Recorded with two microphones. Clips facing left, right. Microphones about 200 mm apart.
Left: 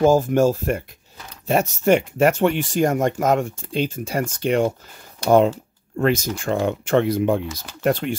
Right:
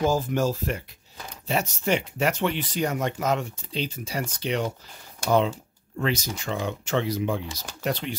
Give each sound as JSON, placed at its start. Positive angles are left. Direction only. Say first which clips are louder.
{"t": 0.0, "sound": "speech", "louder": "left 8 dB", "side_deg": 50}
{"t": 5.9, "sound": "speech", "louder": "left 7 dB", "side_deg": 50}